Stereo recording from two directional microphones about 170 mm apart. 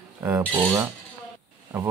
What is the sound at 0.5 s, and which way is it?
Cutlery, 20° right (ahead or behind).